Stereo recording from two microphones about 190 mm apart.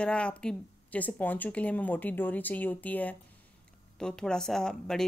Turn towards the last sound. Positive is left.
turn(degrees=5)  # may be behind; listen again after turning